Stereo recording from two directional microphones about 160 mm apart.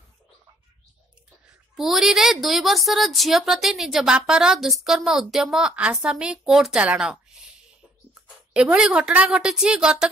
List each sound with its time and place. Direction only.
1.8 s a woman's voice: centre (ahead or behind)
8.5 s a woman's voice: 5° right (ahead or behind)